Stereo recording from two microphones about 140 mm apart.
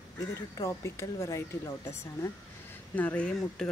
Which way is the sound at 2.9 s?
10° left (ahead or behind).